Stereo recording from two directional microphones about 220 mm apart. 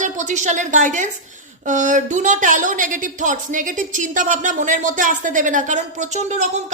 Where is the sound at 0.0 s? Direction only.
35° right (ahead or behind).